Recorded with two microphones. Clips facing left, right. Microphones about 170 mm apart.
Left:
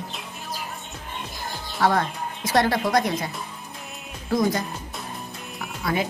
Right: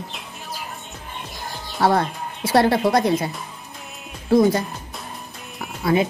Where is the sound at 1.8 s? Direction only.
30° right (ahead or behind).